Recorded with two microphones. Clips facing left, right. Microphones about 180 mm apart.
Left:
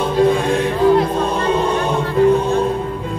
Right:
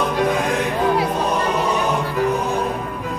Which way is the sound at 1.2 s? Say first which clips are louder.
Left 3 dB; 25° left (ahead or behind).